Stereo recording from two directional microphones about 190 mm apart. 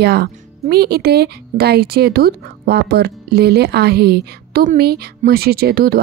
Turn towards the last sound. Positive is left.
turn(degrees=-55)  # may be behind; listen again after turning